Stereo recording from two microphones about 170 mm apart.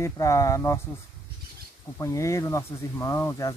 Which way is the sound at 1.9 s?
20° left (ahead or behind).